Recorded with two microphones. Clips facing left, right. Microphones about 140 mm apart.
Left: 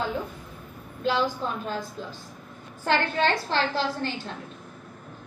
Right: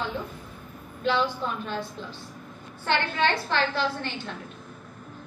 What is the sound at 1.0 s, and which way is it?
A woman's voice, 40° left (ahead or behind).